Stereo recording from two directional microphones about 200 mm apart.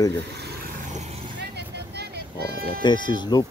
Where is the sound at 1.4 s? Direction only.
55° right (ahead or behind).